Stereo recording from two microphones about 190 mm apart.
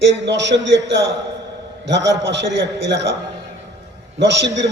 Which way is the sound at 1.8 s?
65° right (ahead or behind).